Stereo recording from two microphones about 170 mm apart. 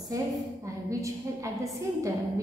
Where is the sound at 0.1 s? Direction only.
20° right (ahead or behind).